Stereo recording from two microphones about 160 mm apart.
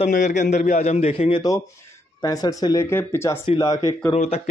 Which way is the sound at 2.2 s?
20° left (ahead or behind).